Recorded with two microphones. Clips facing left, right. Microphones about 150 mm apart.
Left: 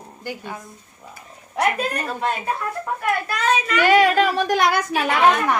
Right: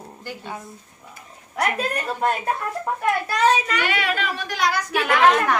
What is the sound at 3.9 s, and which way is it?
Speech, 40° left (ahead or behind).